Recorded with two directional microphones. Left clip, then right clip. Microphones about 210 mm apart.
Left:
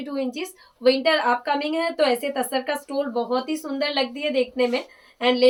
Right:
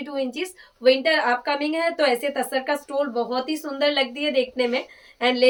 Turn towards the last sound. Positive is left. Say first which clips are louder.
# even
turn(degrees=-15)  # may be behind; listen again after turning